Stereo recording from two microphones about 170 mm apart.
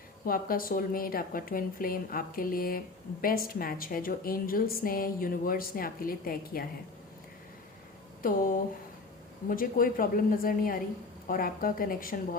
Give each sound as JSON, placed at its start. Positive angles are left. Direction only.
{"t": 0.3, "sound": "a woman's voice", "side_deg": 55}
{"t": 8.2, "sound": "a woman's voice", "side_deg": 55}